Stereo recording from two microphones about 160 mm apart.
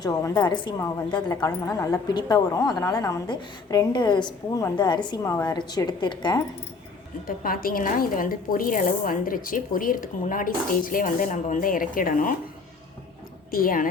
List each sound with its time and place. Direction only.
0.0 s a woman's voice: 20° left (ahead or behind)
5.2 s a woman's voice: 15° left (ahead or behind)
5.5 s a woman's voice: 25° left (ahead or behind)
7.3 s speech: 65° left (ahead or behind)
13.5 s speech: 65° left (ahead or behind)